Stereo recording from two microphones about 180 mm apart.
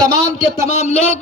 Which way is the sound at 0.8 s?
35° left (ahead or behind).